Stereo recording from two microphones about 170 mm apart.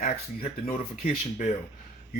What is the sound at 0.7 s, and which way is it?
Speech, 45° left (ahead or behind).